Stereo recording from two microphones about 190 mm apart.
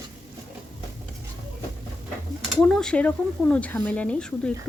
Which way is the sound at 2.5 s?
Centre (ahead or behind).